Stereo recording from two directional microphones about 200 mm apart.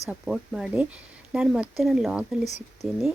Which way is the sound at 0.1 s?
5° right (ahead or behind).